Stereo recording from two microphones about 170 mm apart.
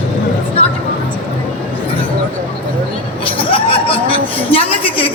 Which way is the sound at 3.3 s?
30° left (ahead or behind).